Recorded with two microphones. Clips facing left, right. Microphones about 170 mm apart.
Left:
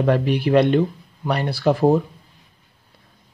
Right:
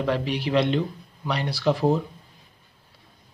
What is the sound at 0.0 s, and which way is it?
Speech, 50° left (ahead or behind).